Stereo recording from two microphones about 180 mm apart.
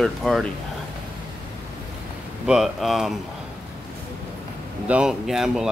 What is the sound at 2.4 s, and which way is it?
Speech, centre (ahead or behind).